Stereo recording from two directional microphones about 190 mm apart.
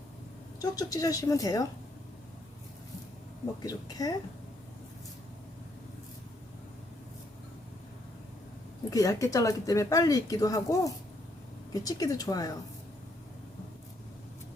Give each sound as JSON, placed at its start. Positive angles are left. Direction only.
{"t": 0.6, "sound": "speech", "side_deg": 20}
{"t": 3.6, "sound": "speech", "side_deg": 20}
{"t": 8.9, "sound": "speech", "side_deg": 15}